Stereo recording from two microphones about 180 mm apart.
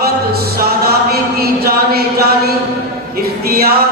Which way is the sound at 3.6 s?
60° right (ahead or behind).